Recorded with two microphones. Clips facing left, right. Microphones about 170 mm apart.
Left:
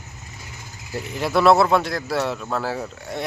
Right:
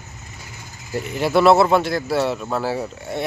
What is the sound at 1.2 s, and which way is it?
Speech, centre (ahead or behind).